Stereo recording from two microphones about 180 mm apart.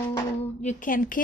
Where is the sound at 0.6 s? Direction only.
45° left (ahead or behind).